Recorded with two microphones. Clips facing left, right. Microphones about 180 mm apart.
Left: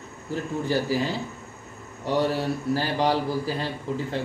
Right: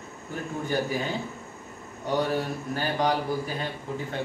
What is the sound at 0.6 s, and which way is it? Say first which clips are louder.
Speech: left 3 dB; 35° left (ahead or behind).